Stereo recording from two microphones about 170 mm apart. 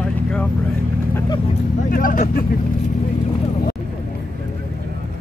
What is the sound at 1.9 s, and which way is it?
Speech, 55° left (ahead or behind).